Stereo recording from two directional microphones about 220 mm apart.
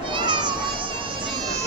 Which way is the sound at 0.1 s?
20° right (ahead or behind).